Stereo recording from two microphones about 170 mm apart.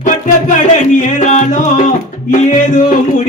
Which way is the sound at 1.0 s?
45° left (ahead or behind).